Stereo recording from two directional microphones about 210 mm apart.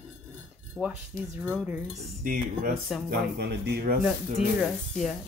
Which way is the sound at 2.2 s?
40° right (ahead or behind).